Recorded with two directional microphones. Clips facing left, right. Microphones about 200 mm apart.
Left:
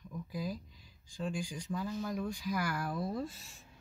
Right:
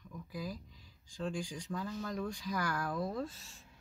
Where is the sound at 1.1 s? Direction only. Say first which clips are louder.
Even; 10° left (ahead or behind).